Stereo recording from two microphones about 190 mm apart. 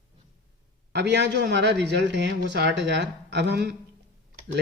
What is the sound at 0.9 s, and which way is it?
A woman's voice, 65° right (ahead or behind).